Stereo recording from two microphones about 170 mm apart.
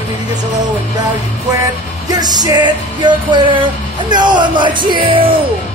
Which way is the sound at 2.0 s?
25° right (ahead or behind).